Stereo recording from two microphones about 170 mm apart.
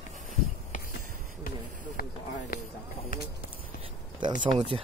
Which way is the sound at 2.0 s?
60° left (ahead or behind).